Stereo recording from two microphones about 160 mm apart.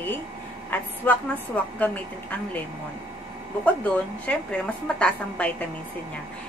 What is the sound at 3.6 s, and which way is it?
A woman's voice, 10° left (ahead or behind).